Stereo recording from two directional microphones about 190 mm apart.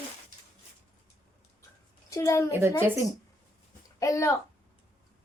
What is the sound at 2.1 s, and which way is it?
Speech, 15° left (ahead or behind).